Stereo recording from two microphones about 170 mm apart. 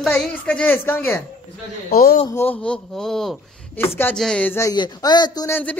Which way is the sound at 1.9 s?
60° left (ahead or behind).